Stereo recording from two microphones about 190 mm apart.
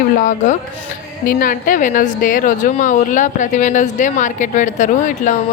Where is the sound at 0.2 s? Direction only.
40° left (ahead or behind).